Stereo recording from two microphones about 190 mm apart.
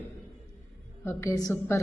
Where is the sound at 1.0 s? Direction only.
15° left (ahead or behind).